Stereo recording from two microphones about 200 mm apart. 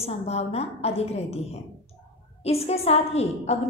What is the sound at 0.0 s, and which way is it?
A woman's voice, 30° left (ahead or behind).